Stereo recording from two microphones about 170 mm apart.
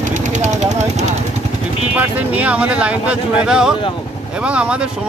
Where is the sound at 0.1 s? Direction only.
45° right (ahead or behind).